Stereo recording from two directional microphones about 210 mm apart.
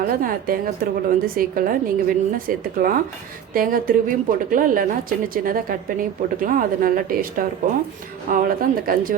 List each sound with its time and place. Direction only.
0.0 s a woman's voice: 40° right (ahead or behind)